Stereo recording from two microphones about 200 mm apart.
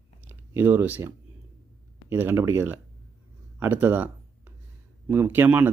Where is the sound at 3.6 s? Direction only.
10° right (ahead or behind).